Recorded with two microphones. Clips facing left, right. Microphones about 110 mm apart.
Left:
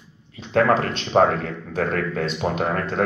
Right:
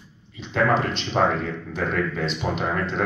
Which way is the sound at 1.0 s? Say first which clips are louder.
Left 4 dB; 45° left (ahead or behind).